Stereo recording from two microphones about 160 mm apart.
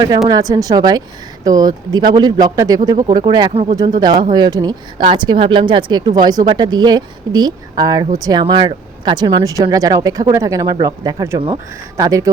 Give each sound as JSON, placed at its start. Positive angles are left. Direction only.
{"t": 0.3, "sound": "speech", "side_deg": -25}
{"t": 11.3, "sound": "speech", "side_deg": -30}
{"t": 11.9, "sound": "speech", "side_deg": -20}